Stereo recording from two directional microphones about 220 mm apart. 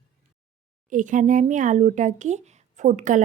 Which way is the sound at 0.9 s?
35° right (ahead or behind).